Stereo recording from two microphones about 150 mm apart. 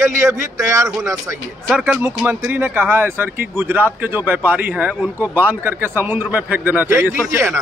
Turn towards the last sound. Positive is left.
turn(degrees=-15)  # may be behind; listen again after turning